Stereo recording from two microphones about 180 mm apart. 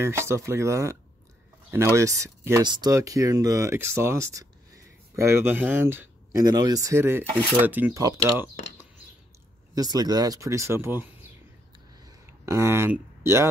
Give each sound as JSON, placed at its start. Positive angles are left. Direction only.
{"t": 0.0, "sound": "speech", "side_deg": -15}
{"t": 9.8, "sound": "speech", "side_deg": -20}
{"t": 12.4, "sound": "speech", "side_deg": -15}